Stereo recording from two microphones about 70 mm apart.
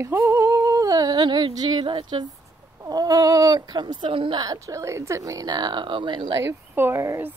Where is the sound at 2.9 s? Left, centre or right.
Right.